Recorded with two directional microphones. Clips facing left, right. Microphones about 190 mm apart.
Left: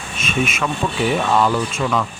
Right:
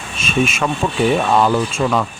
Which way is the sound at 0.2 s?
30° right (ahead or behind).